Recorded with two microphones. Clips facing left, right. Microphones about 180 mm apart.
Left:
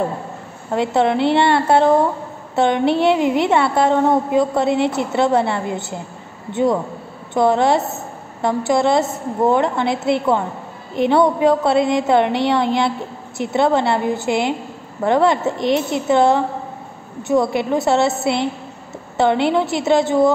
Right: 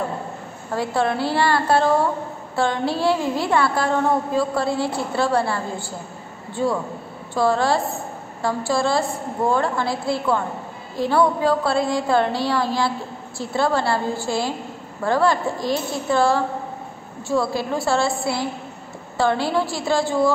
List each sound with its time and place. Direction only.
0.7 s a woman's voice: 20° left (ahead or behind)